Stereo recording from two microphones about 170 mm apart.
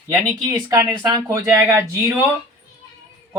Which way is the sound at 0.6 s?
20° right (ahead or behind).